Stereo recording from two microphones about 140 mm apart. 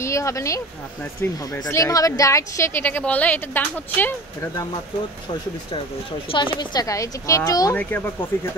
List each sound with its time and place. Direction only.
0.0 s speech: 20° left (ahead or behind)
6.2 s speech: 35° left (ahead or behind)
7.7 s speech: 15° left (ahead or behind)